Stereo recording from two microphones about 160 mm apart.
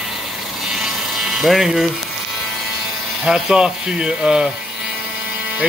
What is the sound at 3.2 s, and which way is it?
Speech, 5° right (ahead or behind).